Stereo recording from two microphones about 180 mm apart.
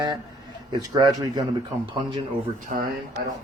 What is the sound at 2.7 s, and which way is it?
Speech, 40° right (ahead or behind).